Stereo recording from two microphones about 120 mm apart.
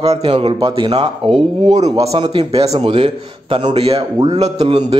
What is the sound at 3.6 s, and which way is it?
A man's voice, 65° right (ahead or behind).